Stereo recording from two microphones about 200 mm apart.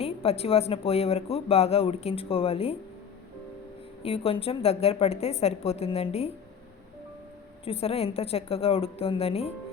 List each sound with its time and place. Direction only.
0.0 s speech: 30° left (ahead or behind)
4.0 s a woman's voice: 30° left (ahead or behind)
7.6 s speech: 30° left (ahead or behind)